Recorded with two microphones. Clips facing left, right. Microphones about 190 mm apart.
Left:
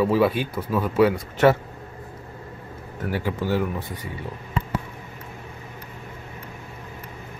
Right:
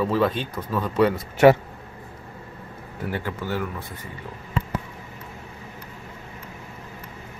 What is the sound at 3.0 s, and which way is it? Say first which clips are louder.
Speech: left 2 dB; 5° left (ahead or behind).